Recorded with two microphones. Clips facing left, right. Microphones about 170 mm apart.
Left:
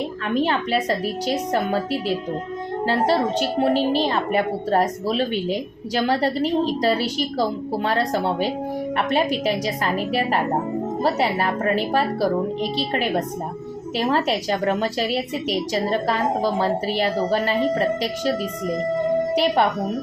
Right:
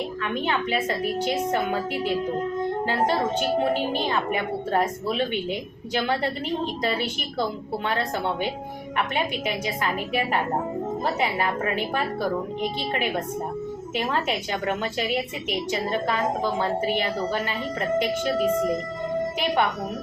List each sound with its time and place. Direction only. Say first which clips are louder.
0.4 s a woman's voice: even; 35° left (ahead or behind)
2.8 s a woman's voice: left 6 dB; 35° left (ahead or behind)